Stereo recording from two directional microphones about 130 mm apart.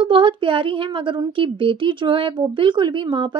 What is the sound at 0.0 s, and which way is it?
Speech, 40° right (ahead or behind).